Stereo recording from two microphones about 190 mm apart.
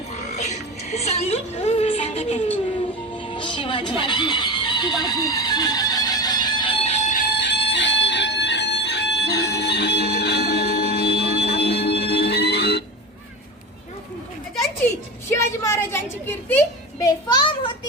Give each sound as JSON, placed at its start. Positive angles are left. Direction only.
{"t": 0.3, "sound": "a woman's voice", "side_deg": 35}
{"t": 3.2, "sound": "music", "side_deg": 25}
{"t": 7.3, "sound": "music", "side_deg": 65}
{"t": 15.3, "sound": "a sound", "side_deg": 15}
{"t": 17.0, "sound": "children playing", "side_deg": 20}